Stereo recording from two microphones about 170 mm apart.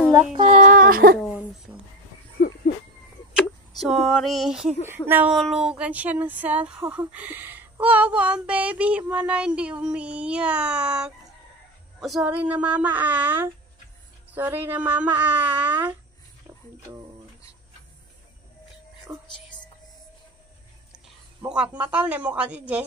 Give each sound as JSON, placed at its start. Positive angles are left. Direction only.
{"t": 0.4, "sound": "speech", "side_deg": -40}
{"t": 3.3, "sound": "a sound", "side_deg": 0}
{"t": 4.8, "sound": "speech", "side_deg": -10}
{"t": 19.1, "sound": "speech", "side_deg": -10}
{"t": 21.5, "sound": "speech", "side_deg": -10}